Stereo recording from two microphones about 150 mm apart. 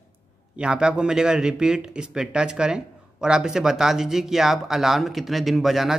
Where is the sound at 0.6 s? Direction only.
5° right (ahead or behind).